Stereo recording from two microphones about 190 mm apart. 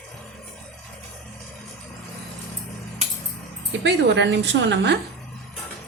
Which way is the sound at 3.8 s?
70° right (ahead or behind).